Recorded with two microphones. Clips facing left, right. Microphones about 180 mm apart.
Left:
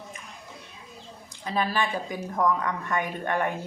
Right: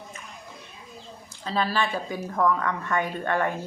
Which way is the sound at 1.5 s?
15° left (ahead or behind).